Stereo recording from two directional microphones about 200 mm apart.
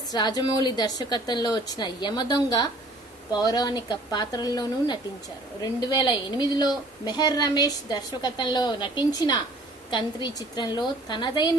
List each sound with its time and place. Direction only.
0.1 s a woman's voice: 20° left (ahead or behind)